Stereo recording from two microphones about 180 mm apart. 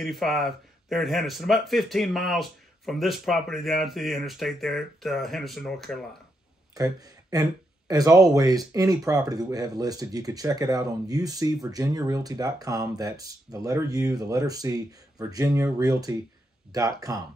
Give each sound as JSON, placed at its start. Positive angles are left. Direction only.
{"t": 0.0, "sound": "speech", "side_deg": 0}
{"t": 6.7, "sound": "a sound", "side_deg": -20}
{"t": 7.9, "sound": "speech", "side_deg": -20}